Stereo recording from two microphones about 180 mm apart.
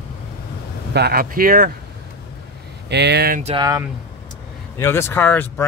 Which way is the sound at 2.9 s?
70° right (ahead or behind).